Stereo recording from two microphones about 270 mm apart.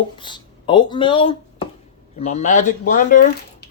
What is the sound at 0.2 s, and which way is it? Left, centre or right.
Speech, centre.